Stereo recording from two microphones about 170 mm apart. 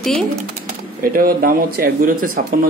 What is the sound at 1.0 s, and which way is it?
Speech, 55° right (ahead or behind).